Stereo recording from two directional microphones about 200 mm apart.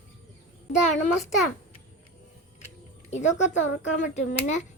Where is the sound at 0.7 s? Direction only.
35° left (ahead or behind).